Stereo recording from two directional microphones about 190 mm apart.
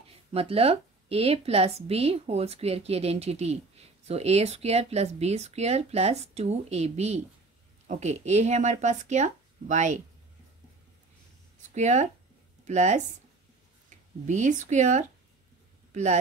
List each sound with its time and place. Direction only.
0.3 s a woman's voice: 30° right (ahead or behind)
11.7 s a woman's voice: 40° right (ahead or behind)
14.2 s a woman's voice: 40° right (ahead or behind)